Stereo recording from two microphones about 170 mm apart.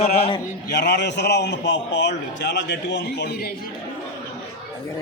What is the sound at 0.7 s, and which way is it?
A man's voice, 85° left.